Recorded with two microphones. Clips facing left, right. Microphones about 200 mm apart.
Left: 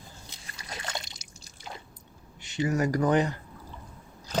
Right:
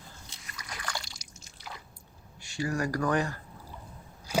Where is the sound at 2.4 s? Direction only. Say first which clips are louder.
Left 4 dB; 20° left (ahead or behind).